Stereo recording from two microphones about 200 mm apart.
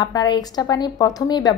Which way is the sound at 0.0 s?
20° left (ahead or behind).